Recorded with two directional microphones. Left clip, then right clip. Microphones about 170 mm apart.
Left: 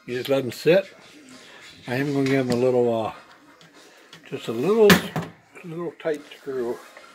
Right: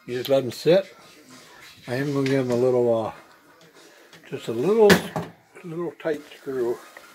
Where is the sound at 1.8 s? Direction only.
Centre (ahead or behind).